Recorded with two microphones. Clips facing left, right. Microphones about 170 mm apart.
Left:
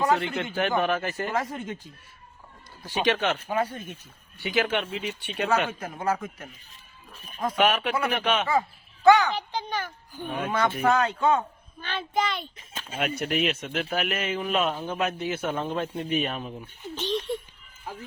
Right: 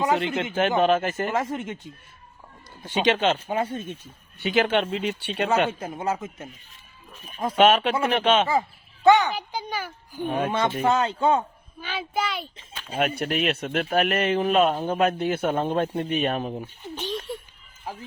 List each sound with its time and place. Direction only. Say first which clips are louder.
0.0 s a man's voice: right 1 dB; 20° right (ahead or behind)
9.3 s speech: even; 10° right (ahead or behind)
10.2 s speech: right 2 dB; 35° right (ahead or behind)
11.8 s a child's voice: even; 10° right (ahead or behind)
12.9 s speech: right 3 dB; 50° right (ahead or behind)
14.3 s a man's voice: right 6 dB; 35° right (ahead or behind)
15.2 s speech: right 5 dB; 55° right (ahead or behind)
15.4 s speech: right 5 dB; 40° right (ahead or behind)
16.9 s speech: left 3 dB; 10° right (ahead or behind)